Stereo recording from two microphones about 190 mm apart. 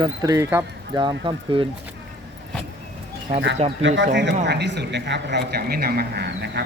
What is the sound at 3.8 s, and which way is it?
Speech, 75° right (ahead or behind).